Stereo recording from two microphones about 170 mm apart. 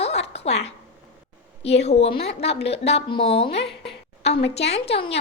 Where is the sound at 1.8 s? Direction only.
40° left (ahead or behind).